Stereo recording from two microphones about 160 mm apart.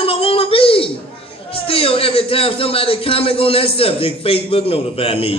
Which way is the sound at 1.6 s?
35° left (ahead or behind).